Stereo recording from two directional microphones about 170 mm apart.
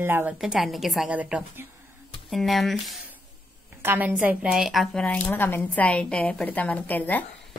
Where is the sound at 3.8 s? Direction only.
10° right (ahead or behind); by 7.3 s 10° left (ahead or behind).